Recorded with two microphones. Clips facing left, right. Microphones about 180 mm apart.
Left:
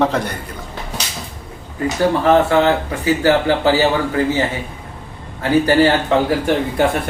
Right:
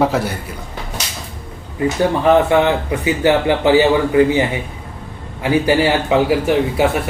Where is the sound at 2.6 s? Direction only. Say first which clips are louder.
Even; 20° right (ahead or behind).